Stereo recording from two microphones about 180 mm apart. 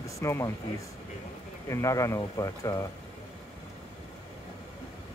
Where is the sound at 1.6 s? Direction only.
15° left (ahead or behind).